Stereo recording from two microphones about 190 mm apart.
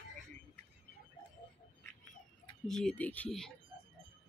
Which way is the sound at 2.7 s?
5° left (ahead or behind).